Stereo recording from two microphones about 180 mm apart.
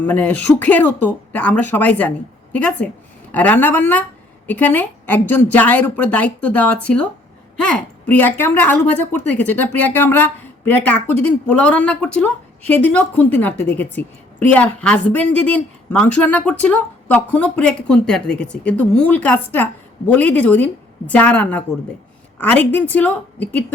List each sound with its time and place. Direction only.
0.0 s a woman's voice: 10° left (ahead or behind)